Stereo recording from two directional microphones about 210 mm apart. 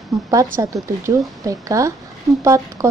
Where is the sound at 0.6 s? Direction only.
15° right (ahead or behind).